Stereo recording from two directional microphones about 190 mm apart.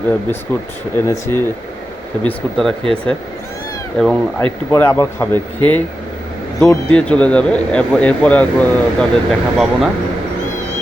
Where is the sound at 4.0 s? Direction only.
5° left (ahead or behind).